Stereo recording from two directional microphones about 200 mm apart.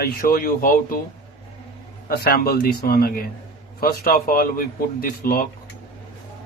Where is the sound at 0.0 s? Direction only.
45° left (ahead or behind).